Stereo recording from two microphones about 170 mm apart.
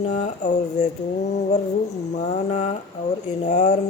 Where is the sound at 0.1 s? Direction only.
45° left (ahead or behind).